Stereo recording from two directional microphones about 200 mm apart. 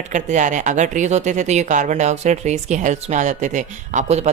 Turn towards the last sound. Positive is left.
turn(degrees=-35)  # may be behind; listen again after turning